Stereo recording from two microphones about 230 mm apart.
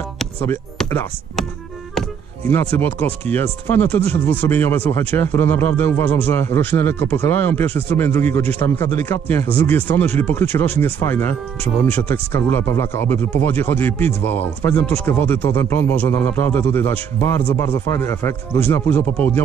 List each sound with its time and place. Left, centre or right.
0.2 s a sound: centre
0.8 s speech: centre
2.5 s speech: centre